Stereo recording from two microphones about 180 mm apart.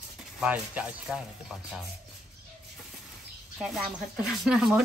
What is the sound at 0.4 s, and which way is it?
Speech, 5° right (ahead or behind).